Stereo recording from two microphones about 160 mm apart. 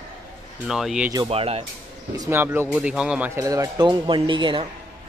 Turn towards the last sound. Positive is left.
turn(degrees=-30)  # may be behind; listen again after turning